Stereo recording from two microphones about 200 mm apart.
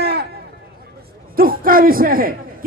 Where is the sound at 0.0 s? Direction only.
55° right (ahead or behind).